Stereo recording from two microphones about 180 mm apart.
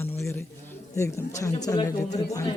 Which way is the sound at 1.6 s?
20° left (ahead or behind).